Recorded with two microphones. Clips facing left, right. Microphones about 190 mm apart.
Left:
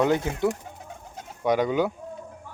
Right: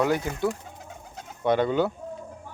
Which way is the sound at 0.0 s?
25° left (ahead or behind).